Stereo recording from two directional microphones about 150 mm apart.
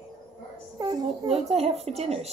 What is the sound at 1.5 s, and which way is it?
Speech, 40° right (ahead or behind).